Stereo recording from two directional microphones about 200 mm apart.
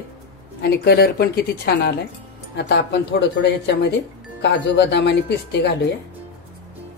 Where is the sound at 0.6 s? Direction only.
55° left (ahead or behind).